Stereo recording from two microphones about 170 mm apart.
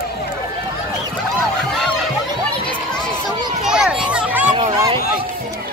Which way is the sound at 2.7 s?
5° left (ahead or behind).